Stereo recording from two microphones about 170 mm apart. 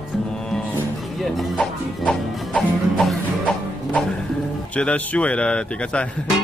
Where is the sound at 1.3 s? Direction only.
Centre (ahead or behind).